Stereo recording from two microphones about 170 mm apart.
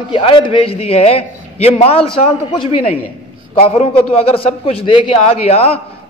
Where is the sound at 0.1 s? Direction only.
30° left (ahead or behind).